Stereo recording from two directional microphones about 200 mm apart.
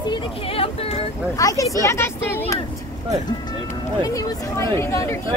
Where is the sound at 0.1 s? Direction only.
30° left (ahead or behind).